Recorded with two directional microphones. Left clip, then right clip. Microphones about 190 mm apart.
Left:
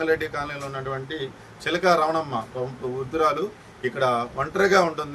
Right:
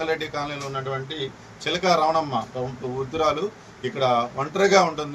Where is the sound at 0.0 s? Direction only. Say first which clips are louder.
Left 2 dB; 5° left (ahead or behind).